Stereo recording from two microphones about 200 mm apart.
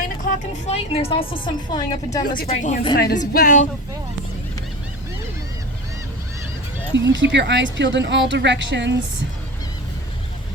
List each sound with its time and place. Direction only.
0.0 s vehicle: 40° left (ahead or behind)
0.9 s a woman's voice: 25° left (ahead or behind)
2.5 s speech: 35° left (ahead or behind)
2.9 s speech: 50° left (ahead or behind)
6.9 s speech: 65° right (ahead or behind)